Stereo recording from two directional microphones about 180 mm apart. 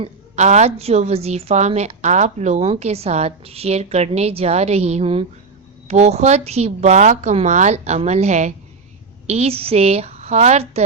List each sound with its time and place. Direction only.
0.0 s a woman's voice: 40° right (ahead or behind)